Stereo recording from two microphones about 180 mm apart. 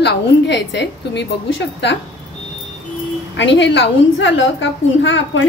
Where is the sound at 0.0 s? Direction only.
75° left (ahead or behind).